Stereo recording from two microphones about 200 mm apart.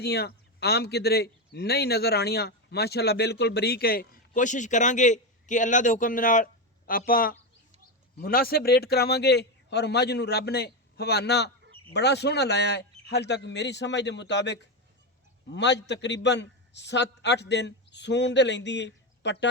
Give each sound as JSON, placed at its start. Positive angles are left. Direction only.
{"t": 0.0, "sound": "a man's voice", "side_deg": 55}